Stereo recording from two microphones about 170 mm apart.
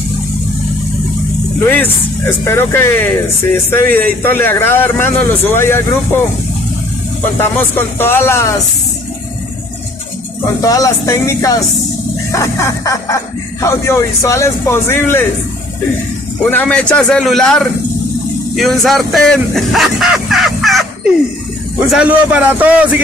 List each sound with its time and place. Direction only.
1.7 s speech: 15° left (ahead or behind)
7.3 s speech: 15° left (ahead or behind)
10.4 s speech: 20° left (ahead or behind)
16.4 s a man's voice: 10° left (ahead or behind); by 22.8 s 10° right (ahead or behind)